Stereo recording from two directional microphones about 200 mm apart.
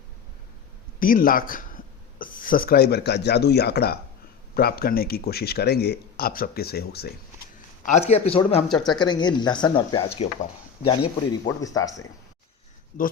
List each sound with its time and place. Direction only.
0.9 s speech: 45° left (ahead or behind)
7.9 s speech: 35° left (ahead or behind)
8.7 s speech: centre (ahead or behind)
9.0 s speech: 20° left (ahead or behind)
11.3 s speech: 20° left (ahead or behind)